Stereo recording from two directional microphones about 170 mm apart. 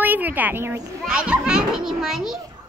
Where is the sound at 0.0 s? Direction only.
10° right (ahead or behind).